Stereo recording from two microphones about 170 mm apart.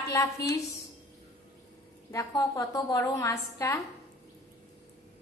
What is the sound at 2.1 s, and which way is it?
A woman's voice, 20° left (ahead or behind).